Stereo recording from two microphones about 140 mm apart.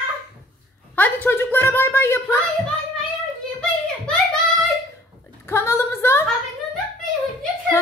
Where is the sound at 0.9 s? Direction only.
15° left (ahead or behind).